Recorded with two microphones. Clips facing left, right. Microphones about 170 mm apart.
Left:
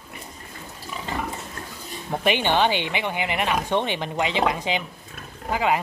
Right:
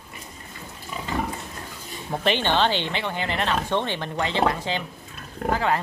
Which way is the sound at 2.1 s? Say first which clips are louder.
Left 1 dB; 10° left (ahead or behind).